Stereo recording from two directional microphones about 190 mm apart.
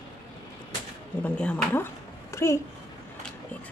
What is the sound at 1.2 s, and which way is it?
A child's voice, 10° left (ahead or behind).